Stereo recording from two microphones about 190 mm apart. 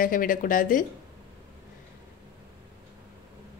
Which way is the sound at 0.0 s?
45° left (ahead or behind).